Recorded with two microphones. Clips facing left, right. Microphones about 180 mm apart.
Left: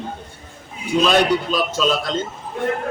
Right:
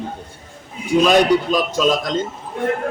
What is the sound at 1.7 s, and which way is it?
Speech, 15° right (ahead or behind).